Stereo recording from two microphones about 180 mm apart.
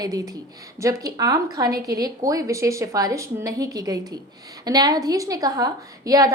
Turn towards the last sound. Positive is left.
turn(degrees=-20)  # may be behind; listen again after turning